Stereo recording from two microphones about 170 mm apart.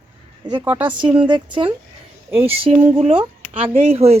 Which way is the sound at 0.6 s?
10° right (ahead or behind).